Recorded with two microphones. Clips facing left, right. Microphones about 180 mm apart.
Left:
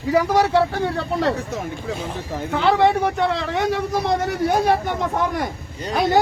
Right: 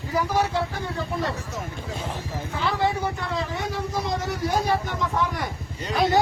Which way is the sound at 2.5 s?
70° left (ahead or behind).